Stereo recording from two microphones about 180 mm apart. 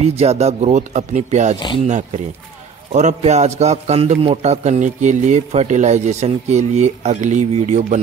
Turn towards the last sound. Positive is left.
turn(degrees=-40)  # may be behind; listen again after turning